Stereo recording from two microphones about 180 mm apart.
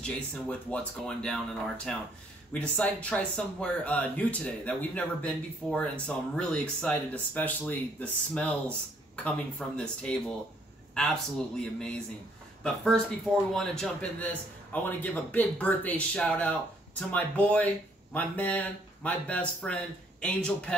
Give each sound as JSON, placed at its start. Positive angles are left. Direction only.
{"t": 0.0, "sound": "speech", "side_deg": 5}